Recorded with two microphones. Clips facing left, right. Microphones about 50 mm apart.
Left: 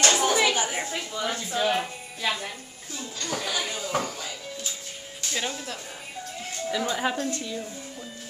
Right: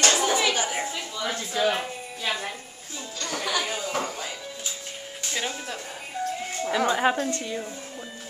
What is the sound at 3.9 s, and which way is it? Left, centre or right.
Music, right.